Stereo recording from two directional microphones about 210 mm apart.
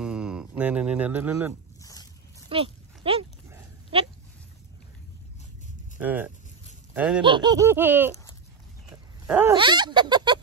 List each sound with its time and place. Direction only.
0.0 s mantra: 5° right (ahead or behind)
1.8 s boat: 15° left (ahead or behind)
2.5 s speech: 25° right (ahead or behind)
3.9 s goat: 25° right (ahead or behind)
5.9 s speech: 10° right (ahead or behind)
6.9 s a sound: 5° right (ahead or behind)
7.2 s laughter: 20° right (ahead or behind)
9.3 s laughter: 10° right (ahead or behind)
9.6 s speech: 20° right (ahead or behind)